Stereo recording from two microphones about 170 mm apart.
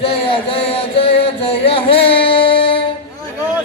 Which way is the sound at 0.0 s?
35° left (ahead or behind).